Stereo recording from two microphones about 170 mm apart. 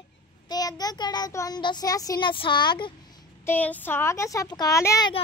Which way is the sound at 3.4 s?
10° left (ahead or behind).